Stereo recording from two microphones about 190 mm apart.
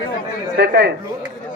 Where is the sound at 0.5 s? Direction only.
60° right (ahead or behind).